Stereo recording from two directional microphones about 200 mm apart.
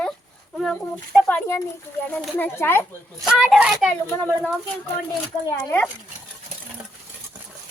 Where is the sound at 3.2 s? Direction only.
Centre (ahead or behind).